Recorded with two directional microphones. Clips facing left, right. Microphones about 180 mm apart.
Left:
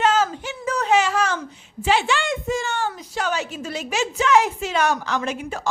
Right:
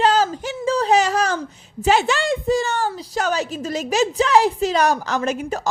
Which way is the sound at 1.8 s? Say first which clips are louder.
Right 3 dB; 40° right (ahead or behind).